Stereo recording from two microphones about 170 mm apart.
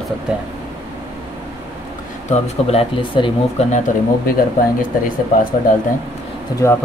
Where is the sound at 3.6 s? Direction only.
45° left (ahead or behind).